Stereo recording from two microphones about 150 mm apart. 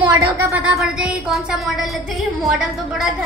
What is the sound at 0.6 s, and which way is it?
Speech, 5° right (ahead or behind).